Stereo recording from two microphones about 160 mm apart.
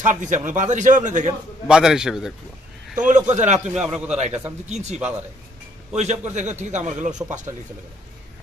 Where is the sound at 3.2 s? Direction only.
50° right (ahead or behind).